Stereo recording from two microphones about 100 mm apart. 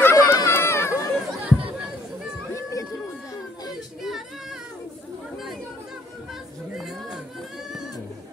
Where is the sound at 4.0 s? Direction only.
Centre (ahead or behind).